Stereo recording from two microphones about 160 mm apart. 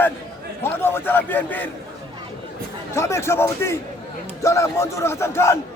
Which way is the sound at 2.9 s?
15° left (ahead or behind).